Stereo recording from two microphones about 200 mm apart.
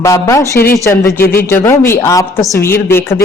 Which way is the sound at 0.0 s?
15° left (ahead or behind).